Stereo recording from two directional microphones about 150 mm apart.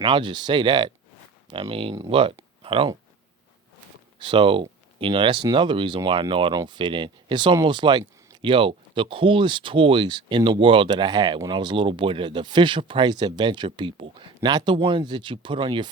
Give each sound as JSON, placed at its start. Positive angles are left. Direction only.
{"t": 0.0, "sound": "speech", "side_deg": -35}
{"t": 4.2, "sound": "speech", "side_deg": -35}